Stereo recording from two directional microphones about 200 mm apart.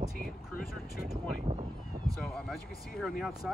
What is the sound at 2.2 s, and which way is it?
Speech, centre (ahead or behind).